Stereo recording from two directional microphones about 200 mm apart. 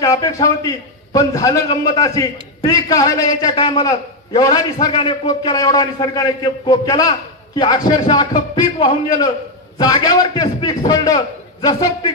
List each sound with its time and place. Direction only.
0.0 s a man's voice: 15° left (ahead or behind)